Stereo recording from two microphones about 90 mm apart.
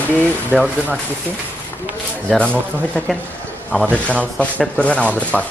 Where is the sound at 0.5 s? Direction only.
15° right (ahead or behind).